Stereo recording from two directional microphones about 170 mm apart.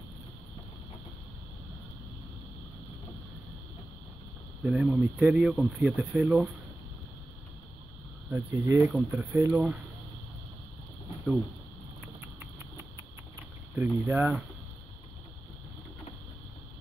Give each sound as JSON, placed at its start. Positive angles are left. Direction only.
{"t": 4.6, "sound": "speech", "side_deg": -5}
{"t": 8.3, "sound": "speech", "side_deg": -10}
{"t": 13.7, "sound": "speech", "side_deg": -10}